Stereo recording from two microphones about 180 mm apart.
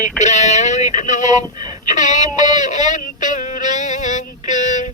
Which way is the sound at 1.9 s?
40° left (ahead or behind).